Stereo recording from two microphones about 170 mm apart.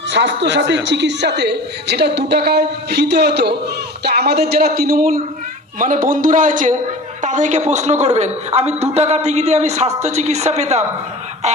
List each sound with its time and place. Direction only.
0.1 s a woman's voice: 90° right; by 10.8 s 40° right (ahead or behind)